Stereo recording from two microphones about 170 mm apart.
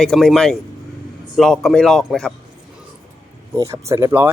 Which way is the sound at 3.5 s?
15° right (ahead or behind).